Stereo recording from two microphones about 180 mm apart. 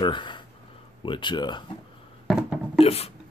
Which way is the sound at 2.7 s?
35° left (ahead or behind).